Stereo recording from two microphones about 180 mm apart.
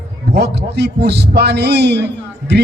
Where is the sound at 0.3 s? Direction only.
70° right (ahead or behind).